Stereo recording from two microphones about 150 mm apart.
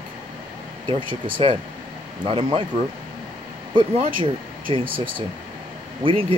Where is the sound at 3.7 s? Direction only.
35° right (ahead or behind).